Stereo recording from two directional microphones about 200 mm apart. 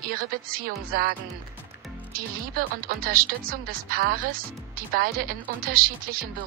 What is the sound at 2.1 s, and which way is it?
A woman's voice, 45° right (ahead or behind).